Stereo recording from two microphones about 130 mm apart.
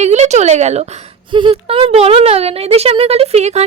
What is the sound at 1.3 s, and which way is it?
Speech, 40° right (ahead or behind).